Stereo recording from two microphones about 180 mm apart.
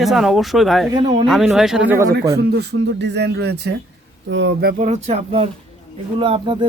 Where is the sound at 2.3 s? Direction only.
65° right (ahead or behind).